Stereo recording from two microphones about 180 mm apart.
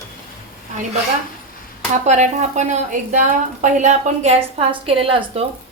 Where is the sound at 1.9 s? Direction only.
40° right (ahead or behind).